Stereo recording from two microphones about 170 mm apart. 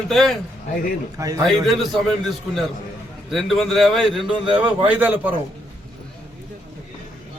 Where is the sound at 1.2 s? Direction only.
15° right (ahead or behind).